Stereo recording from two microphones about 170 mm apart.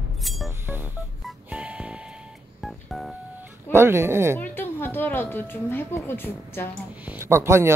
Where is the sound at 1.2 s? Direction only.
5° right (ahead or behind).